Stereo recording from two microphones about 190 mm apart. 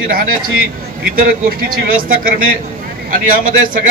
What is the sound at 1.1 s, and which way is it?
A man's voice, 50° right (ahead or behind).